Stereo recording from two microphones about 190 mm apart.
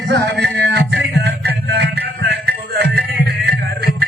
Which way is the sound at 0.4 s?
60° right (ahead or behind).